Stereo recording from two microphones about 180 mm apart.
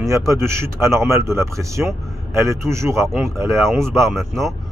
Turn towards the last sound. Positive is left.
turn(degrees=0)  # may be behind; listen again after turning